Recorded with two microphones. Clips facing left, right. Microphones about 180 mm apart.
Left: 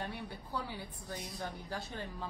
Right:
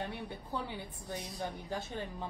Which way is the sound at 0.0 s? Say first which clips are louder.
Right 2 dB; 20° right (ahead or behind).